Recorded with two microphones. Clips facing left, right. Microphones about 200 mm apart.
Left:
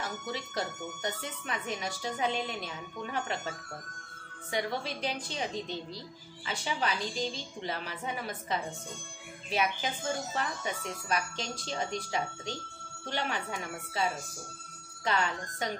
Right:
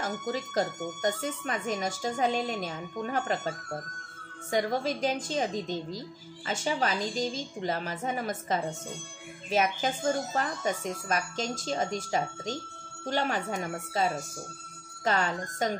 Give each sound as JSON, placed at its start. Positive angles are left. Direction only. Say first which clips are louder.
{"t": 0.0, "sound": "speech", "louder": "right 5 dB", "side_deg": -45}
{"t": 15.0, "sound": "speech", "louder": "right 3 dB", "side_deg": -40}